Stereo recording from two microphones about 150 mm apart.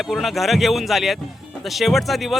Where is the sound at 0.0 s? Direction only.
Centre (ahead or behind).